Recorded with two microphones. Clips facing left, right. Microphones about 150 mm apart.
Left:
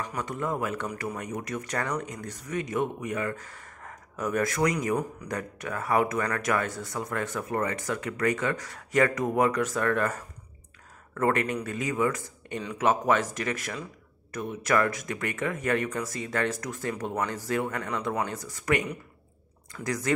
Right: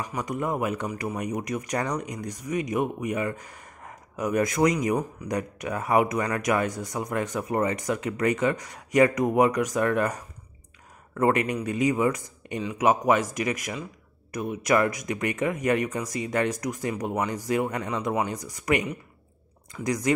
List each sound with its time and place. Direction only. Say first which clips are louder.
0.0 s speech: right 2 dB; 15° right (ahead or behind)